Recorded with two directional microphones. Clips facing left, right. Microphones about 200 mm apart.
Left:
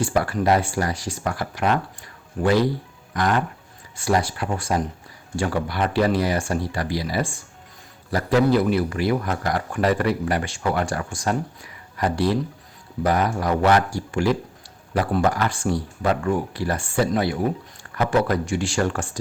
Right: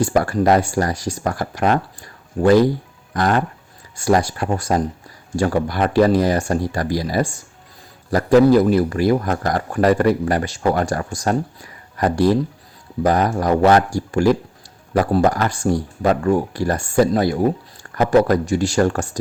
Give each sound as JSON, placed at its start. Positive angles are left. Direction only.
{"t": 0.0, "sound": "speech", "side_deg": -45}